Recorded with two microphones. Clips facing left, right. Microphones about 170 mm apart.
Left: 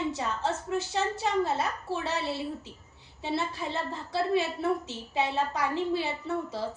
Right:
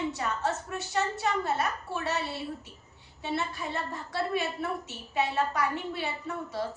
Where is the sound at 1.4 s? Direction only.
25° left (ahead or behind).